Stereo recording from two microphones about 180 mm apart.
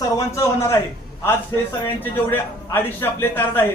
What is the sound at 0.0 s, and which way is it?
Speech, 15° left (ahead or behind).